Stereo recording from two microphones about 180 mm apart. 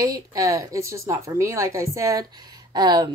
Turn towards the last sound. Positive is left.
turn(degrees=-25)  # may be behind; listen again after turning